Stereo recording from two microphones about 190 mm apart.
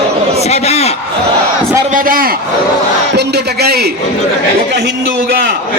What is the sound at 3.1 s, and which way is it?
Speech, 60° right (ahead or behind).